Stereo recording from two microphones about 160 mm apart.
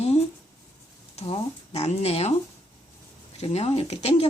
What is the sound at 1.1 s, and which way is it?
Speech, 40° left (ahead or behind).